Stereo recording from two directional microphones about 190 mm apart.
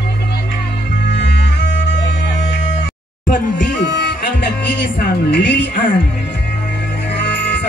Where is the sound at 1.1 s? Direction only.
65° left (ahead or behind).